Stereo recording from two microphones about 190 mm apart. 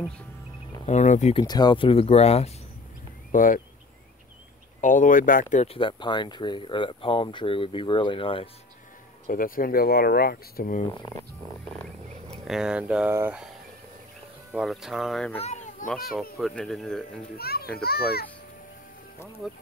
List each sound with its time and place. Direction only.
0.8 s speech: 40° left (ahead or behind)
1.4 s speech: 20° left (ahead or behind)
3.3 s speech: 45° left (ahead or behind)
4.8 s speech: 45° left (ahead or behind); by 8.5 s 25° left (ahead or behind)
9.3 s speech: 50° left (ahead or behind)
12.4 s speech: 5° right (ahead or behind)
14.5 s speech: centre (ahead or behind)
15.4 s children playing: 40° left (ahead or behind)
15.9 s speech: centre (ahead or behind)
17.4 s a child's voice: 55° left (ahead or behind)